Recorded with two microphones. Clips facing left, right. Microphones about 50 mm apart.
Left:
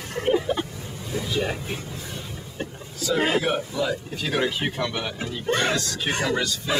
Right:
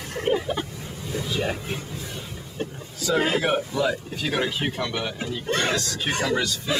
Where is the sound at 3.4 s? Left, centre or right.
Centre.